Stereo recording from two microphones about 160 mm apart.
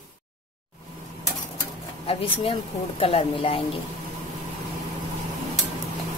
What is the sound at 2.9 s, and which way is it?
Speech, 35° left (ahead or behind).